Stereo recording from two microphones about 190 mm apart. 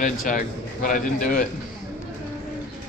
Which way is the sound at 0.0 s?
45° left (ahead or behind).